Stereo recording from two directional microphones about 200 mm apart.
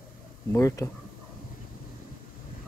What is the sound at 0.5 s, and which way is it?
Speech, 15° left (ahead or behind).